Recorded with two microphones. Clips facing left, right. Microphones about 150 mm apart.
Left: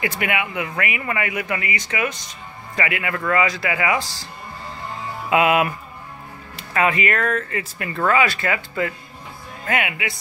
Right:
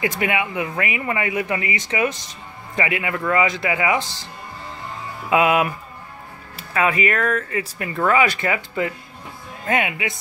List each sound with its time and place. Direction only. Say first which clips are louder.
0.0 s speech: right 2 dB; 25° right (ahead or behind)
6.5 s speech: even; 5° right (ahead or behind)
7.4 s speech: right 2 dB; 20° right (ahead or behind)